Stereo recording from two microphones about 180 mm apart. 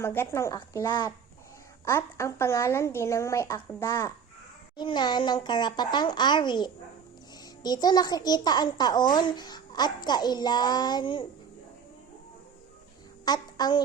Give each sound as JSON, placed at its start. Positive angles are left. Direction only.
{"t": 0.0, "sound": "speech", "side_deg": 15}
{"t": 4.8, "sound": "a child's voice", "side_deg": 25}
{"t": 13.2, "sound": "a sound", "side_deg": 25}